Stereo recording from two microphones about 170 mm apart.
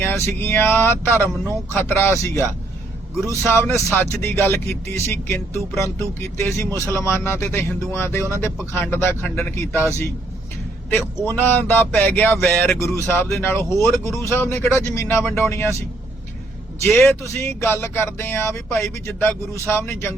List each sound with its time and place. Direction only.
0.0 s speech: 15° left (ahead or behind)
10.8 s speech: 15° left (ahead or behind)
16.8 s speech: 15° left (ahead or behind)